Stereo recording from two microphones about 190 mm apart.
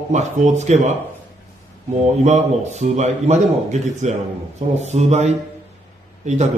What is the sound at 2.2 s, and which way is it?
A man's voice, 35° right (ahead or behind).